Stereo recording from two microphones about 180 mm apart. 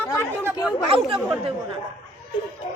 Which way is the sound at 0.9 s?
30° right (ahead or behind).